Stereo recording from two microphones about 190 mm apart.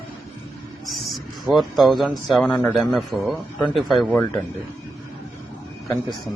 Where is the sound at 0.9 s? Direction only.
Centre (ahead or behind).